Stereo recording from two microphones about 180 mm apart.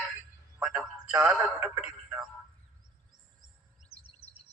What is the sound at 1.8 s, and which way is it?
Speech, 5° right (ahead or behind).